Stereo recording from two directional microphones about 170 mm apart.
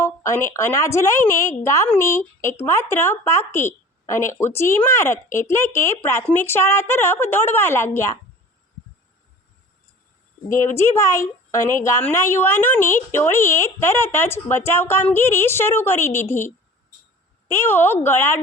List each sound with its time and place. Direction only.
0.0 s speech: 15° left (ahead or behind)
10.5 s speech: 15° left (ahead or behind)
17.5 s speech: 15° left (ahead or behind)